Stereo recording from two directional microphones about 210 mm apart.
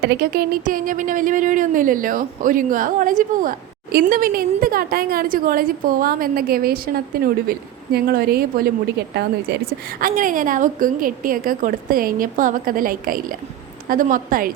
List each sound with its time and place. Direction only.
0.0 s a woman's voice: 50° right (ahead or behind)
10.0 s speech: 40° right (ahead or behind)